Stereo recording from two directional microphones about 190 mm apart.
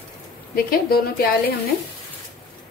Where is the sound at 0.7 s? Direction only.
55° left (ahead or behind).